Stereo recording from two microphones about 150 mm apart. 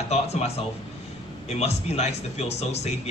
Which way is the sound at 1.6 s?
45° left (ahead or behind).